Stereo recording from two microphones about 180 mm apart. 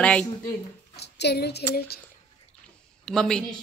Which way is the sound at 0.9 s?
65° left (ahead or behind).